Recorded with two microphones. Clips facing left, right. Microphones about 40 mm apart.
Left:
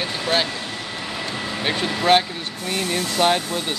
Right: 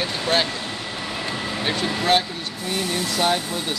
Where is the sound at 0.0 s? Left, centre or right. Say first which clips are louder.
Even; centre.